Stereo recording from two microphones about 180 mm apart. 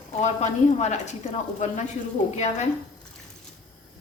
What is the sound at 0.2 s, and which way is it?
A woman's voice, 40° left (ahead or behind).